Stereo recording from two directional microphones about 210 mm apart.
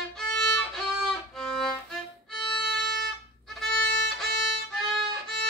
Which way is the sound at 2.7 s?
Centre (ahead or behind).